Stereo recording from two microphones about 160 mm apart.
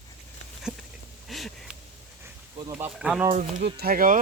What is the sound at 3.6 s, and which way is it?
Speech, 75° right (ahead or behind).